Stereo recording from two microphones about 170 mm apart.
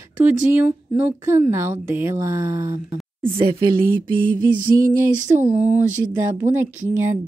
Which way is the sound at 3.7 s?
55° right (ahead or behind).